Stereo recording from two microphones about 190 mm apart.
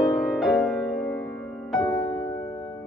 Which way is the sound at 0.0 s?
Centre (ahead or behind).